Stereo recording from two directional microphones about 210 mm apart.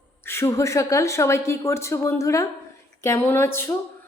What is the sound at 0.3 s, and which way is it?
A woman's voice, 15° left (ahead or behind).